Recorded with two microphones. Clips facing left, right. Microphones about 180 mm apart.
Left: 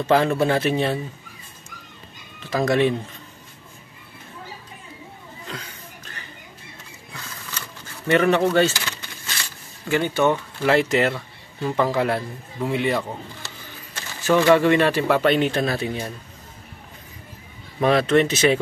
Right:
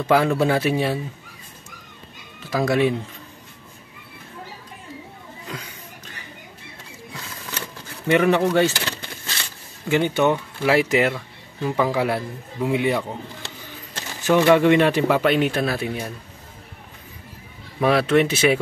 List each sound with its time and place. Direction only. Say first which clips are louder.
0.0 s speech: even; 10° right (ahead or behind)
2.5 s speech: even; 10° right (ahead or behind)
5.5 s a sound: right 1 dB; 10° right (ahead or behind)
8.1 s speech: even; 10° right (ahead or behind)
9.8 s speech: right 1 dB; 20° right (ahead or behind)
14.2 s speech: right 1 dB; 15° right (ahead or behind)
17.7 s speech: even; 5° right (ahead or behind)